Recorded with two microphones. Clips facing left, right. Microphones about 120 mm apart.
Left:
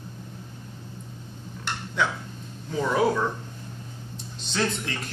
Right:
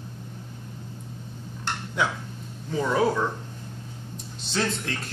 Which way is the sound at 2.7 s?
Centre (ahead or behind).